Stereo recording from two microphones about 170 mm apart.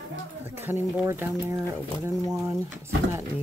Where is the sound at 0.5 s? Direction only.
10° right (ahead or behind).